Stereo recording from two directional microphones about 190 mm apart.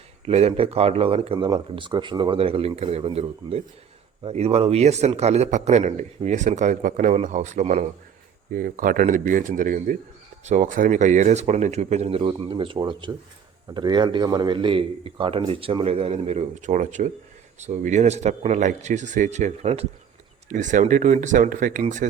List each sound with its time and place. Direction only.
0.3 s a man's voice: 35° right (ahead or behind)